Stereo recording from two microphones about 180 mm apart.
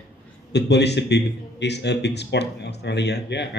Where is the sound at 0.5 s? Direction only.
70° left (ahead or behind).